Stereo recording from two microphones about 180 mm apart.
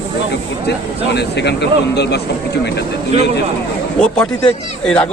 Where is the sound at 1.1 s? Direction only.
70° left (ahead or behind).